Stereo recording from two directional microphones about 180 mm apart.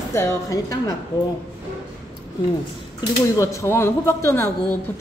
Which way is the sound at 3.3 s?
15° left (ahead or behind).